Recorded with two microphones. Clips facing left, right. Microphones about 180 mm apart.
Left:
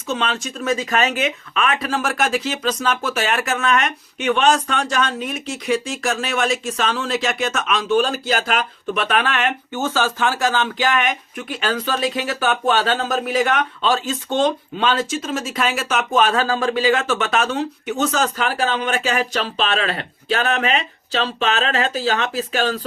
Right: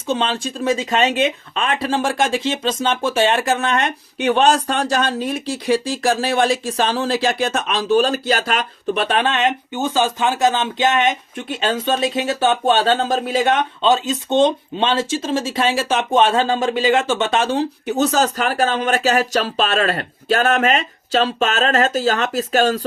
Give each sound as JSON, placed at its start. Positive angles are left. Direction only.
{"t": 0.1, "sound": "speech", "side_deg": -30}